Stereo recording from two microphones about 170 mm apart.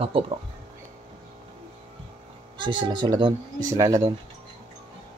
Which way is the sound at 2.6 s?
25° right (ahead or behind).